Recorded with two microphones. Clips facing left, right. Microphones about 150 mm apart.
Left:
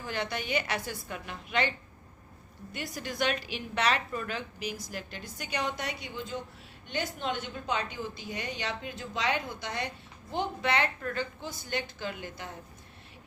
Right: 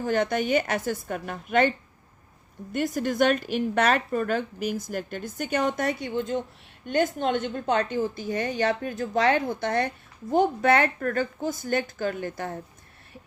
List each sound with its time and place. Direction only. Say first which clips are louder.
0.0 s a woman's voice: right 10 dB; 45° right (ahead or behind)
2.7 s a woman's voice: right 11 dB; 50° right (ahead or behind)